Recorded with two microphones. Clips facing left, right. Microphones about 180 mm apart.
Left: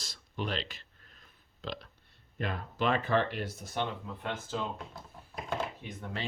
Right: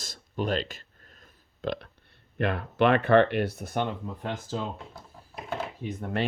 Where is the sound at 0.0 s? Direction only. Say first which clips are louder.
Right 6 dB; 45° right (ahead or behind).